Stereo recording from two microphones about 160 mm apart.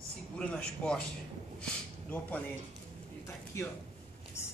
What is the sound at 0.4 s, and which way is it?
Speech, 5° left (ahead or behind).